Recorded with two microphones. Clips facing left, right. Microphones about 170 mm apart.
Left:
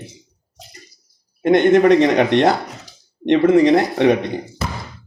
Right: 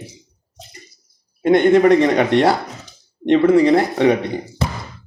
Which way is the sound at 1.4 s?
20° left (ahead or behind).